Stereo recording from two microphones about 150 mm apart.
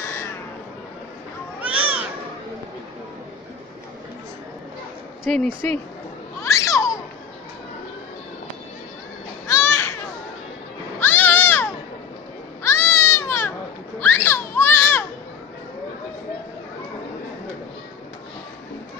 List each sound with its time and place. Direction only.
1.6 s cat: 10° right (ahead or behind)
5.3 s speech: 5° left (ahead or behind)
6.4 s babbling: 20° left (ahead or behind)
9.5 s music: 15° left (ahead or behind)
11.0 s cat: 15° left (ahead or behind)
14.0 s children playing: 15° left (ahead or behind)